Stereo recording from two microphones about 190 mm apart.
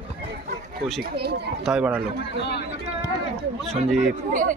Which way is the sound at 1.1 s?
60° right (ahead or behind).